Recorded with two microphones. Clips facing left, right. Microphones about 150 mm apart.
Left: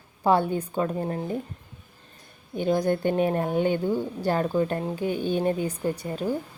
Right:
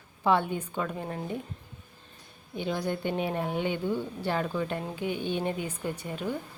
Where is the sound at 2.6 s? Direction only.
45° left (ahead or behind).